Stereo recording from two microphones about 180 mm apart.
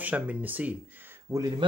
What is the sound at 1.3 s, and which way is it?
Speech, 20° right (ahead or behind).